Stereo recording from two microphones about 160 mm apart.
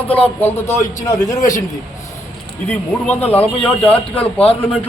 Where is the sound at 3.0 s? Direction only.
10° left (ahead or behind).